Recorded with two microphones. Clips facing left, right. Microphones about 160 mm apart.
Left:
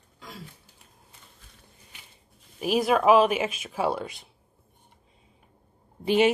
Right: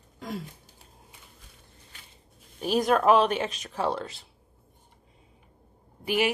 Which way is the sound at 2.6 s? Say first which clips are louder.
Left 1 dB; 5° left (ahead or behind).